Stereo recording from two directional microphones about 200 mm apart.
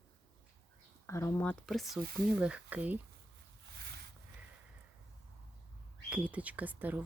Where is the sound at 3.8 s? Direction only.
55° right (ahead or behind).